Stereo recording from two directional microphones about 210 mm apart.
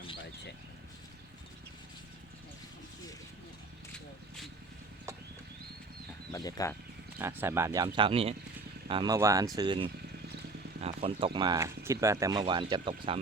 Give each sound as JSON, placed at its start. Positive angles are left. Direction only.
{"t": 6.3, "sound": "speech", "side_deg": 15}
{"t": 7.2, "sound": "speech", "side_deg": -10}